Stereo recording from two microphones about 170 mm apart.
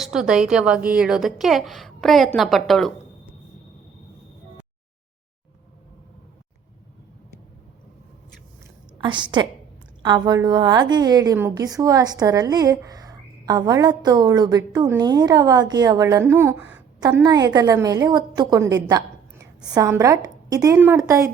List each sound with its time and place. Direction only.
0.0 s a woman's voice: 5° right (ahead or behind)
9.0 s a woman's voice: 30° right (ahead or behind)